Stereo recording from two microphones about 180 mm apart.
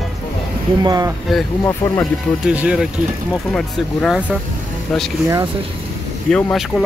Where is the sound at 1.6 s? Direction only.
15° left (ahead or behind).